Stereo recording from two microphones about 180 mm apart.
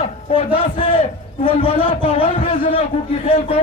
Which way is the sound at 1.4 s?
30° left (ahead or behind).